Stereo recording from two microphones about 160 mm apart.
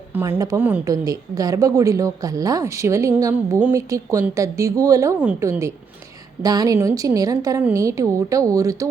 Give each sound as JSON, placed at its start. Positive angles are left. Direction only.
{"t": 0.1, "sound": "a woman's voice", "side_deg": -15}